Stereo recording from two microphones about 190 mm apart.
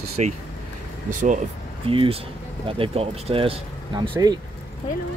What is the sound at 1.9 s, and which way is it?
Speech, 30° right (ahead or behind).